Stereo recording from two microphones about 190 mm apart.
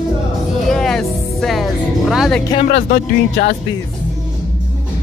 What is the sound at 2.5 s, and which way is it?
Speech, 35° left (ahead or behind).